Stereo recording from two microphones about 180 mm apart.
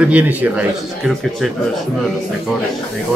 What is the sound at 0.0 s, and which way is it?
Speech, 10° right (ahead or behind).